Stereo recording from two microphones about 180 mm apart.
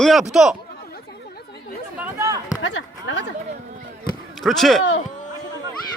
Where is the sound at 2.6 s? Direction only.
90° left.